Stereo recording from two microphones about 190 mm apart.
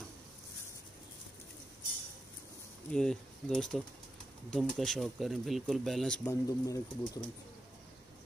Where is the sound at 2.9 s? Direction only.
5° left (ahead or behind).